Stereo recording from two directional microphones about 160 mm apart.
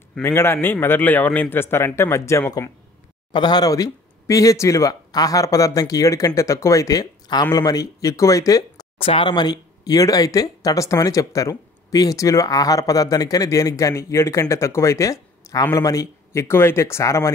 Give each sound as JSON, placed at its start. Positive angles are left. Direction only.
{"t": 0.2, "sound": "a man's voice", "side_deg": 15}
{"t": 8.9, "sound": "speech", "side_deg": 35}